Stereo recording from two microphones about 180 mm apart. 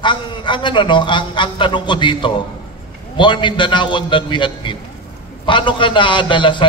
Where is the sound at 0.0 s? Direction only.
25° left (ahead or behind).